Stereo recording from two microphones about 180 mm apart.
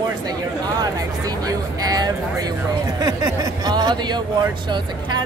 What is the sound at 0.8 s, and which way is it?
Speech, 20° right (ahead or behind).